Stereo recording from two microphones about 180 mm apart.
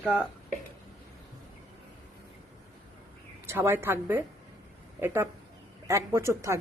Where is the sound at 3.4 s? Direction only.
15° right (ahead or behind).